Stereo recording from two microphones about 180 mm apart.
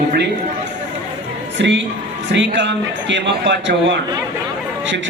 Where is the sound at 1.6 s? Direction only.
80° right.